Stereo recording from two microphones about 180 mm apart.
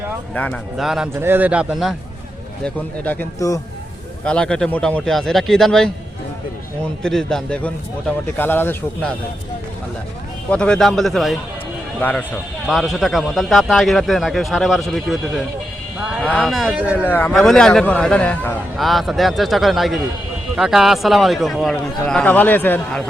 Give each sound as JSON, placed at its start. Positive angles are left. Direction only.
{"t": 0.3, "sound": "speech", "side_deg": 5}
{"t": 2.6, "sound": "a man's voice", "side_deg": 10}
{"t": 7.0, "sound": "speech", "side_deg": 5}
{"t": 10.5, "sound": "speech", "side_deg": 5}
{"t": 17.0, "sound": "a man's voice", "side_deg": 10}